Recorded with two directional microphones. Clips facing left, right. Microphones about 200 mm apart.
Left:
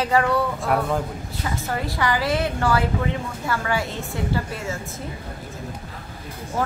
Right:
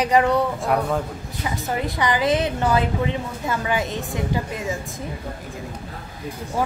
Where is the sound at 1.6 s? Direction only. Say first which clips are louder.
Right 2 dB; 20° right (ahead or behind).